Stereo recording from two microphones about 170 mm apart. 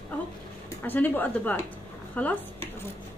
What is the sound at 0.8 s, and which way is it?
A woman's voice, 10° left (ahead or behind).